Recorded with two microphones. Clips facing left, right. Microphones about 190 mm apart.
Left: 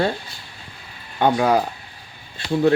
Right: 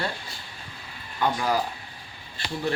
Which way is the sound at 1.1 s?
75° left (ahead or behind).